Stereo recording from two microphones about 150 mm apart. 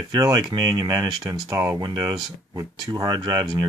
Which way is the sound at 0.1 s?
25° right (ahead or behind).